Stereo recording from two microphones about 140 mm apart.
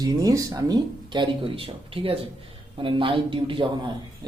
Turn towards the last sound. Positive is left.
turn(degrees=-35)  # may be behind; listen again after turning